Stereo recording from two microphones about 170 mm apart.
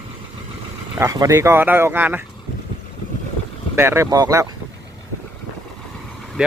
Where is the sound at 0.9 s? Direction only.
20° right (ahead or behind).